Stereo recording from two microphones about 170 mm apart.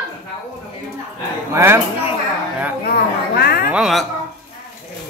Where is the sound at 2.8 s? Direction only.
65° left (ahead or behind).